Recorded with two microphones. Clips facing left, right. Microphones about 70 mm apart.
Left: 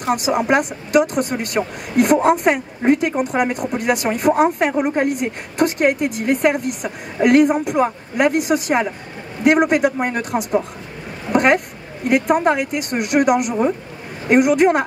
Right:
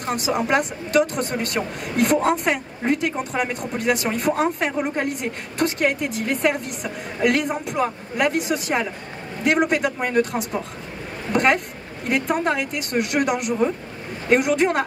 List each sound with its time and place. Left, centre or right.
0.3 s speech: centre
11.3 s a sound: centre
12.1 s speech: centre